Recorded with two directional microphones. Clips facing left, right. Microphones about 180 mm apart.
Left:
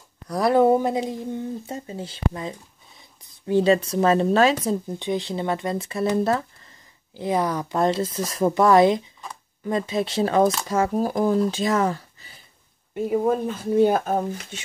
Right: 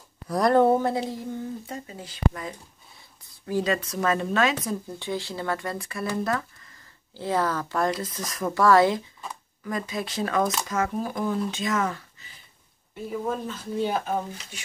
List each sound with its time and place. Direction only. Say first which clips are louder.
0.3 s speech: left 2 dB; 5° left (ahead or behind)
1.7 s speech: left 5 dB; 30° left (ahead or behind)
4.6 s speech: left 6 dB; 20° left (ahead or behind)
7.2 s speech: left 2 dB; 15° left (ahead or behind); by 12.3 s 35° left (ahead or behind)
13.1 s speech: left 7 dB; 55° left (ahead or behind)